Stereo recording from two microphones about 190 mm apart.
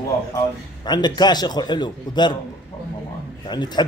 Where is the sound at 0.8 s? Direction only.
20° left (ahead or behind).